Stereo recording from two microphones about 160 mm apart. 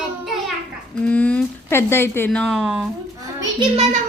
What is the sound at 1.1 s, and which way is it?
Speech, 10° left (ahead or behind).